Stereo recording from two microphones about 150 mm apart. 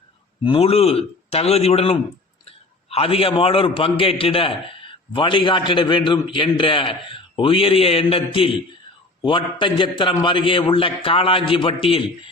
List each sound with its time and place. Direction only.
0.4 s a man's voice: 40° left (ahead or behind)